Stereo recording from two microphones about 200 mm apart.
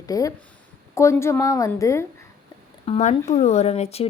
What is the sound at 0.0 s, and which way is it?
A woman's voice, 15° left (ahead or behind).